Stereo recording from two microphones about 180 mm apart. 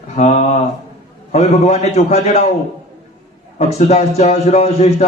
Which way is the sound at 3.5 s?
35° left (ahead or behind).